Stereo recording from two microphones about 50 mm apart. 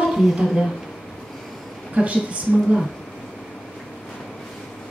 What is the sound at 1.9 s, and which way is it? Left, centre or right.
Speech, right.